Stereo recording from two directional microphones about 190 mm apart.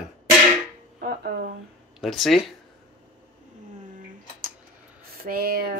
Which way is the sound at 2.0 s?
Centre (ahead or behind).